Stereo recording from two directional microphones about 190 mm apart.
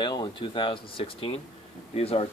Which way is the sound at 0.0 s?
20° left (ahead or behind).